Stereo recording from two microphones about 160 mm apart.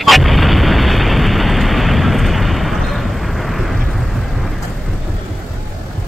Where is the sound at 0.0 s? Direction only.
Centre (ahead or behind).